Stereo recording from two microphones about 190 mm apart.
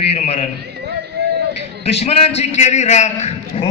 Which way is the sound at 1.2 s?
60° right (ahead or behind).